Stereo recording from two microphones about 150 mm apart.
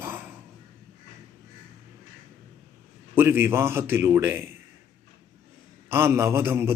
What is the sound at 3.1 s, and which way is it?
A man's voice, 15° right (ahead or behind).